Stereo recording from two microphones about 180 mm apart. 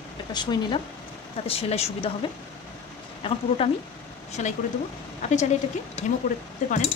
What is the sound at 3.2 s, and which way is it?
Speech, 30° left (ahead or behind).